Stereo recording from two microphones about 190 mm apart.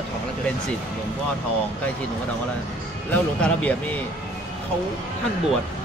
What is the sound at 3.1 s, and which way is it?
Speech, 5° left (ahead or behind).